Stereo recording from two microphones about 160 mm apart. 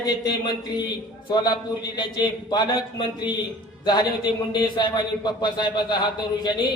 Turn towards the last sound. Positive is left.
turn(degrees=25)  # may be behind; listen again after turning